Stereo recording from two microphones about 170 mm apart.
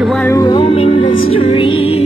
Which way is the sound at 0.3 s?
25° left (ahead or behind).